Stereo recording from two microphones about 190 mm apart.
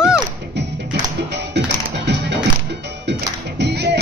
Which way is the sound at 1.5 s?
65° right (ahead or behind).